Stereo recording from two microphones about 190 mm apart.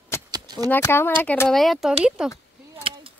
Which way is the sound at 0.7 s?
10° left (ahead or behind).